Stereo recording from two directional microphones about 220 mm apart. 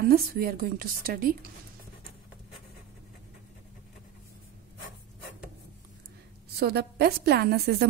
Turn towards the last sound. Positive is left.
turn(degrees=-45)  # may be behind; listen again after turning